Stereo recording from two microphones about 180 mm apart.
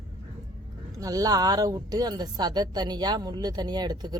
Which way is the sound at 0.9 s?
20° right (ahead or behind).